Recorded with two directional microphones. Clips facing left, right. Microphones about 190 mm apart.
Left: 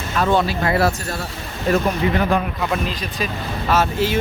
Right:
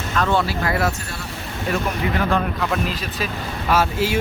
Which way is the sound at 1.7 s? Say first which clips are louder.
Left 6 dB; 40° left (ahead or behind).